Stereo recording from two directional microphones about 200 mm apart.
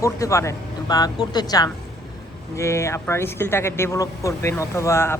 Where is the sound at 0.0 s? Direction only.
15° left (ahead or behind).